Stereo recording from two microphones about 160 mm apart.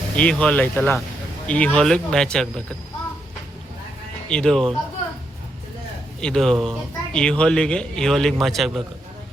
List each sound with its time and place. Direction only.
0.2 s speech: 5° left (ahead or behind)
4.3 s speech: 5° left (ahead or behind)
6.2 s speech: 5° left (ahead or behind)